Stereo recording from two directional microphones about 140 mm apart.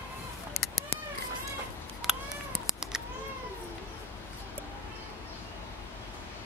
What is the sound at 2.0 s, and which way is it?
Cat, centre (ahead or behind).